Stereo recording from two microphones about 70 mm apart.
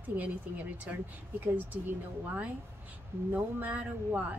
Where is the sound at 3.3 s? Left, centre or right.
Right.